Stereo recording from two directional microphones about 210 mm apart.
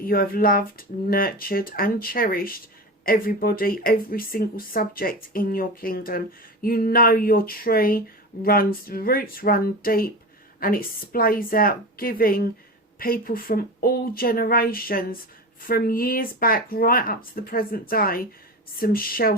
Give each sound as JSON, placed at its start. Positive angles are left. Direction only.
{"t": 0.0, "sound": "speech", "side_deg": 45}